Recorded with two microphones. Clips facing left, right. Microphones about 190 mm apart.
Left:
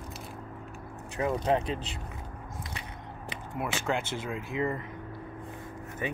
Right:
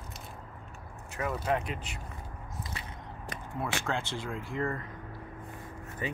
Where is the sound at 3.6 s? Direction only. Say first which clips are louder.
Left 3 dB; 15° left (ahead or behind).